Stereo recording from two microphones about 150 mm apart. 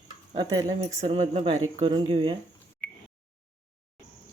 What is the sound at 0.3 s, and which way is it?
Speech, 45° right (ahead or behind).